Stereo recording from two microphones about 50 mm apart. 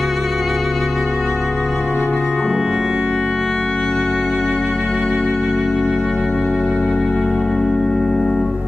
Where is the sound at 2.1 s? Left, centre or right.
Centre.